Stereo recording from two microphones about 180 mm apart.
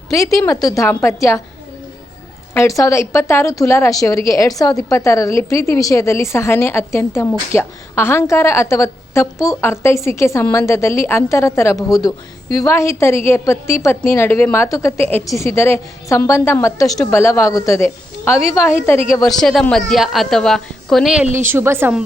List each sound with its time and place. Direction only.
0.4 s a woman's voice: 20° left (ahead or behind)
2.6 s a woman's voice: 15° left (ahead or behind)
19.3 s a woman's voice: centre (ahead or behind)